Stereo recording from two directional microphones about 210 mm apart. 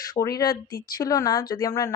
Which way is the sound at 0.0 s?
15° left (ahead or behind).